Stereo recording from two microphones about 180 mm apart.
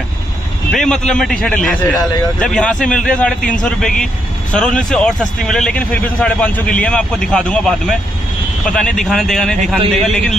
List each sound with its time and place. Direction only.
0.7 s a man's voice: 5° left (ahead or behind)